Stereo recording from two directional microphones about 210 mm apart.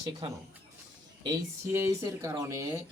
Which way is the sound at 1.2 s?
15° right (ahead or behind).